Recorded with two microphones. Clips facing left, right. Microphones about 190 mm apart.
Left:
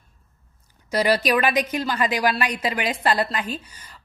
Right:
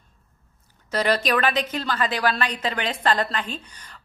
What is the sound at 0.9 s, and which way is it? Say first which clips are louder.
A woman's voice: left 2 dB; 10° left (ahead or behind).